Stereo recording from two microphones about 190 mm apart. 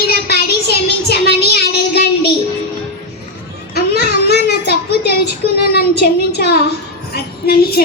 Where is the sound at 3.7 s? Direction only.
60° left (ahead or behind).